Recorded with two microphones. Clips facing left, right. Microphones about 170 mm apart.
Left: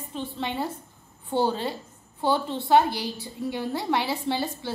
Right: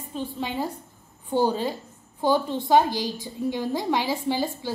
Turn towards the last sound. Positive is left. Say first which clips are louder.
# right 2 dB
turn(degrees=-15)  # may be behind; listen again after turning